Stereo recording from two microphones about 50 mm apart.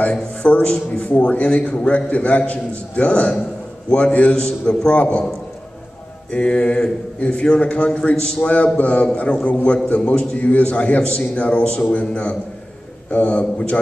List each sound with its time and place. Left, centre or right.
0.4 s a man's voice: left
6.3 s a man's voice: left